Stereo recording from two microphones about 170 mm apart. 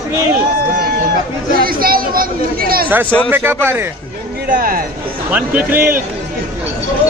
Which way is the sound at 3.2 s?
15° right (ahead or behind).